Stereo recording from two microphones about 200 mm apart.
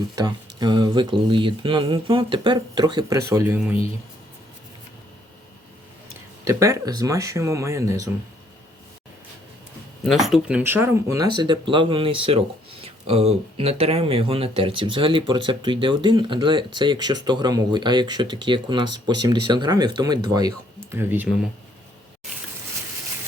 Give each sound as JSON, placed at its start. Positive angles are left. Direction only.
{"t": 0.2, "sound": "speech", "side_deg": -20}
{"t": 6.4, "sound": "speech", "side_deg": -15}
{"t": 10.0, "sound": "speech", "side_deg": 0}